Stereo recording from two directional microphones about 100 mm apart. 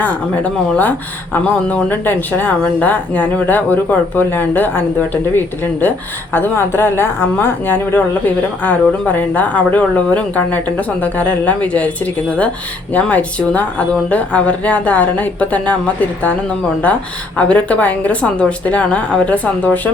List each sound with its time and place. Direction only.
0.0 s speech: 15° left (ahead or behind)
12.9 s speech: 15° left (ahead or behind)